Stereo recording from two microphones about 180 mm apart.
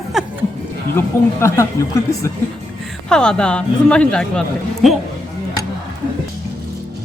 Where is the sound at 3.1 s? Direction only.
5° left (ahead or behind).